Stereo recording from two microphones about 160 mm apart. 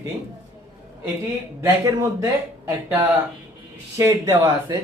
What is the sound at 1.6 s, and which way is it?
Speech, 20° right (ahead or behind).